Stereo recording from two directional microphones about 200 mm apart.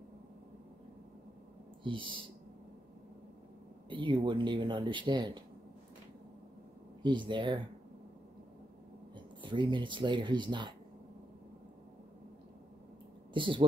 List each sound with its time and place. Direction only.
1.8 s speech: 25° right (ahead or behind)
3.9 s speech: 25° right (ahead or behind)
7.0 s speech: 25° right (ahead or behind)
9.1 s speech: 25° right (ahead or behind)
13.3 s speech: 25° right (ahead or behind)